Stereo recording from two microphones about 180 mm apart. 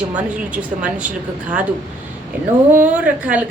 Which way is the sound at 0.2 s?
5° right (ahead or behind).